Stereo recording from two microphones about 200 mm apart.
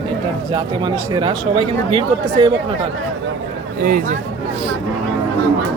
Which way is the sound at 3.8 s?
45° right (ahead or behind).